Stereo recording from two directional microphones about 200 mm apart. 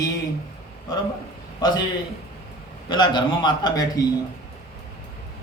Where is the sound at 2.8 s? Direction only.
20° left (ahead or behind).